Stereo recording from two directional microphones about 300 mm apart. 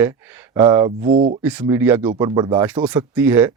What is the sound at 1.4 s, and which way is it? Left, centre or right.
Speech, centre.